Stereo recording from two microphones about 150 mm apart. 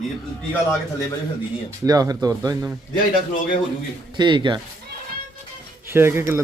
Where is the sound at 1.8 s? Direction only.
25° right (ahead or behind).